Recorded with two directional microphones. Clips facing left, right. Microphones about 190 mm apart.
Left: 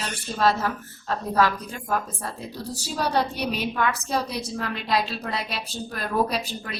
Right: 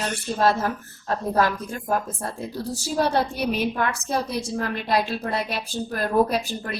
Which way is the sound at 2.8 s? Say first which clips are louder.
Right 2 dB; 50° right (ahead or behind).